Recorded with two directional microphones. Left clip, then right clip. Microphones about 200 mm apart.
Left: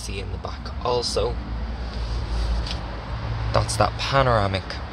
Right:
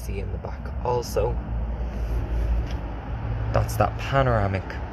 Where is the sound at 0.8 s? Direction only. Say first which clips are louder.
Left 2 dB; 5° left (ahead or behind).